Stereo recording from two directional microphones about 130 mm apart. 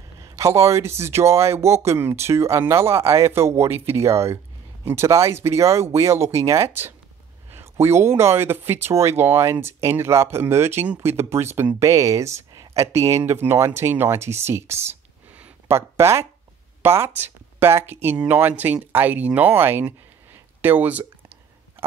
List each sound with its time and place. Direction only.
0.2 s speech: 25° right (ahead or behind)